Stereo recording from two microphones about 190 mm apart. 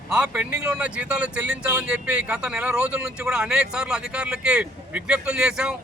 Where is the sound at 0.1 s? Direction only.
5° right (ahead or behind).